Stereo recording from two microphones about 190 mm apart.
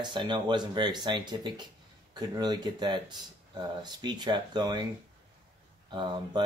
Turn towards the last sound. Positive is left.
turn(degrees=-25)  # may be behind; listen again after turning